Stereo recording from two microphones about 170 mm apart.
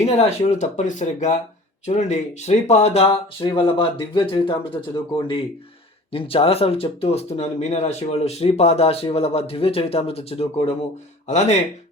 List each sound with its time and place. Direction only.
0.0 s speech: 40° left (ahead or behind)
6.1 s speech: 35° left (ahead or behind)